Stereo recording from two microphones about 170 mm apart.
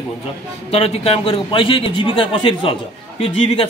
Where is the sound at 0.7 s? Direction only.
35° left (ahead or behind).